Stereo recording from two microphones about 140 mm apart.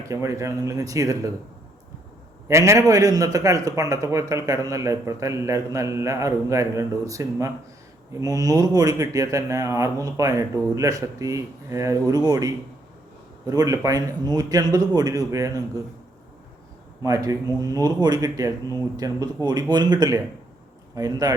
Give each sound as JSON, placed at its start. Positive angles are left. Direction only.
{"t": 0.1, "sound": "a man's voice", "side_deg": -20}
{"t": 2.5, "sound": "a man's voice", "side_deg": -20}
{"t": 17.0, "sound": "a man's voice", "side_deg": -25}